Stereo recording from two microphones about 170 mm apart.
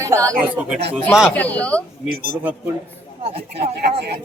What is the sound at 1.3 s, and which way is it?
Speech, 10° left (ahead or behind).